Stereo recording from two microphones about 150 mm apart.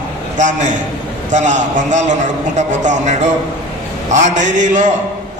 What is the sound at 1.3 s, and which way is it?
A man's voice, 55° right (ahead or behind).